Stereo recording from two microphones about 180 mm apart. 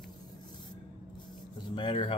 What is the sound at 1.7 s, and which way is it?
Speech, 30° left (ahead or behind).